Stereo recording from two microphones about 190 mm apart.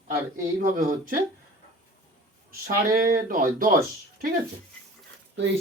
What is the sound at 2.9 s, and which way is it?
Speech, 50° right (ahead or behind).